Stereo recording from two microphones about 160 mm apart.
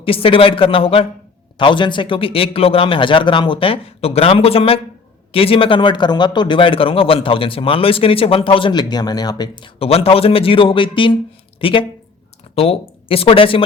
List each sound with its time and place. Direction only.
0.0 s a man's voice: 35° left (ahead or behind)